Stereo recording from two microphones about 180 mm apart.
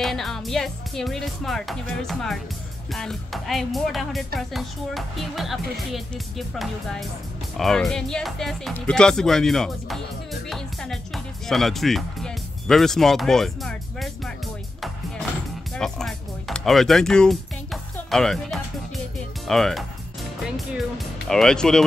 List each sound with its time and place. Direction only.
0.0 s speech: centre (ahead or behind)
15.7 s speech: centre (ahead or behind)